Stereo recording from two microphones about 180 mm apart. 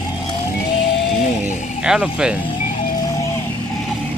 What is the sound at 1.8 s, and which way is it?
Speech, 5° right (ahead or behind).